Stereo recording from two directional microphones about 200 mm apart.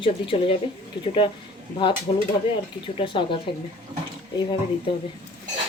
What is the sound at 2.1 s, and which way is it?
A woman's voice, 25° left (ahead or behind).